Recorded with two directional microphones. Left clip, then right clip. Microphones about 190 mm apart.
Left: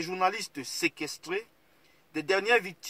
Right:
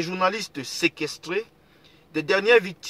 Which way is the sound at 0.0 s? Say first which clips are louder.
Right 5 dB; 10° left (ahead or behind).